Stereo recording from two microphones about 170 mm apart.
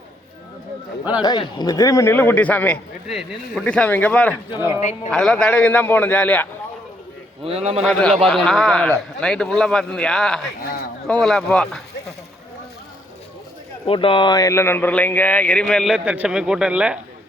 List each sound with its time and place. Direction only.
1.2 s a man's voice: 25° left (ahead or behind); by 6.5 s 10° left (ahead or behind)
7.4 s a man's voice: 40° right (ahead or behind)
7.9 s speech: 5° left (ahead or behind)
13.8 s speech: 30° left (ahead or behind); by 17.0 s 5° right (ahead or behind)